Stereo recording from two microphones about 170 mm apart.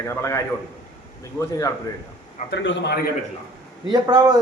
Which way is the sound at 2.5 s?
85° left.